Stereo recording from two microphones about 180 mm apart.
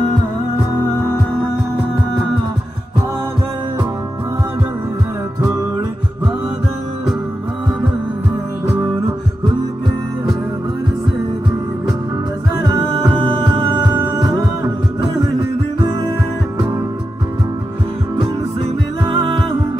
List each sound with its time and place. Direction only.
12.9 s music: 30° right (ahead or behind)
19.0 s music: 30° right (ahead or behind)